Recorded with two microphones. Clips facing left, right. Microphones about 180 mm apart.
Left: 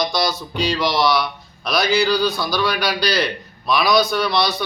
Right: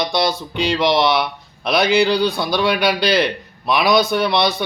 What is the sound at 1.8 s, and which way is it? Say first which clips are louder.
Speech: right 3 dB; 55° right (ahead or behind).